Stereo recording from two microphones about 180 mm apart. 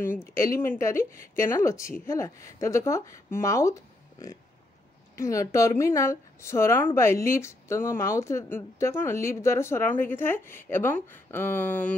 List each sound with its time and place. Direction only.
0.7 s speech: 15° left (ahead or behind)